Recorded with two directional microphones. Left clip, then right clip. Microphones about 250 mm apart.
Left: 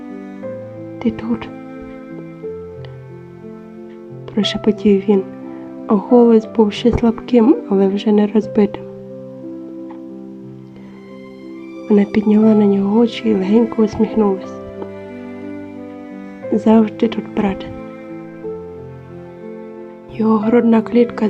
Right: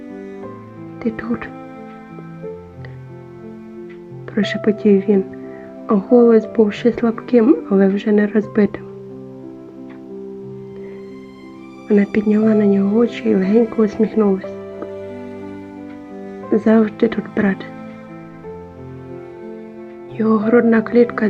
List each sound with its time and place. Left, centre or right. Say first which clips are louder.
1.0 s a woman's voice: left 1 dB; centre
4.4 s a woman's voice: left 1 dB; centre
11.9 s a woman's voice: left 1 dB; centre
16.5 s a woman's voice: left 1 dB; centre
20.1 s a woman's voice: even; centre